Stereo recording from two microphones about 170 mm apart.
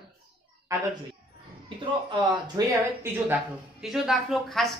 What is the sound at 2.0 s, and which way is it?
Speech, 25° right (ahead or behind).